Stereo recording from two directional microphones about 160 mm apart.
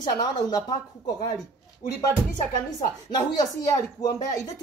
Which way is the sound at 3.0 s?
25° left (ahead or behind).